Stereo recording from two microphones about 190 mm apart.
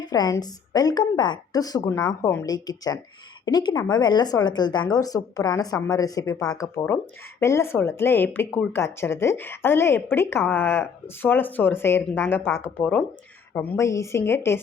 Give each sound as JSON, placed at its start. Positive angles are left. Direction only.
{"t": 0.0, "sound": "a woman's voice", "side_deg": 20}